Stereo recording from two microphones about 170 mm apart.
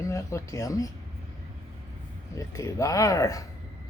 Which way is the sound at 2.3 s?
20° left (ahead or behind).